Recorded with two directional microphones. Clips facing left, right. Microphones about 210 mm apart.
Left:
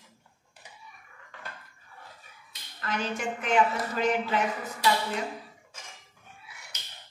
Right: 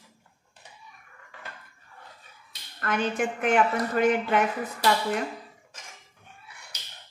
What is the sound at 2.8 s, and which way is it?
Speech, 55° right (ahead or behind).